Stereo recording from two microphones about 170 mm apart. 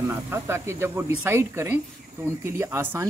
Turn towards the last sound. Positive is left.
turn(degrees=-15)  # may be behind; listen again after turning